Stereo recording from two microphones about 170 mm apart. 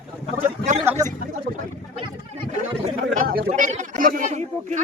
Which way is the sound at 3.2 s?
60° right (ahead or behind).